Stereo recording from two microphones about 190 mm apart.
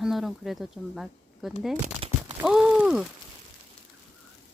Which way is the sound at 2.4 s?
5° right (ahead or behind).